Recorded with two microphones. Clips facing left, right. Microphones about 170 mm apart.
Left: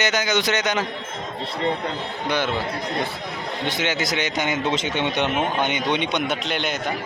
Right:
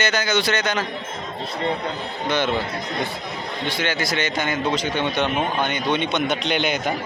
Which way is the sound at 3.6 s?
20° left (ahead or behind).